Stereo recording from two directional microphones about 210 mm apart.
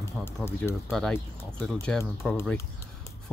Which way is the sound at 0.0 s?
10° left (ahead or behind).